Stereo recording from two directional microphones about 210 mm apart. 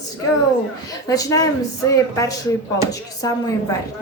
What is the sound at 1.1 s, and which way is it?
Speech, 15° left (ahead or behind).